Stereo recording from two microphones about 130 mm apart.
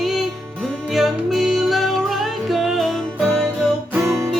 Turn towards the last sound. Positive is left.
turn(degrees=-20)  # may be behind; listen again after turning